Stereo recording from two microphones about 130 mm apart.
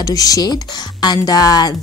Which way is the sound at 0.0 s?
25° left (ahead or behind).